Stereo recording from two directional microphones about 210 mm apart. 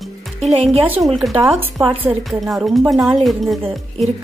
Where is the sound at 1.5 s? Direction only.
Centre (ahead or behind).